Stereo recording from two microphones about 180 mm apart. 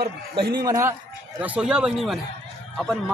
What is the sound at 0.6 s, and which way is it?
Speech, 20° right (ahead or behind).